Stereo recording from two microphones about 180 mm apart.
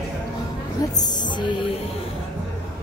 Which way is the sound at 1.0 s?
25° left (ahead or behind).